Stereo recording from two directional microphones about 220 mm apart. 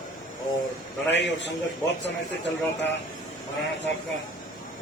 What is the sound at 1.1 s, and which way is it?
Speech, 55° left (ahead or behind).